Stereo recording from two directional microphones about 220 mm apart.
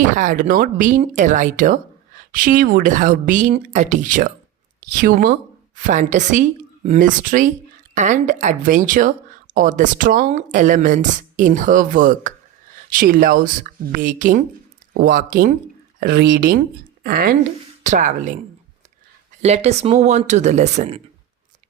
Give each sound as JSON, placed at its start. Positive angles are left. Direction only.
{"t": 0.2, "sound": "speech", "side_deg": -35}
{"t": 19.4, "sound": "speech", "side_deg": -30}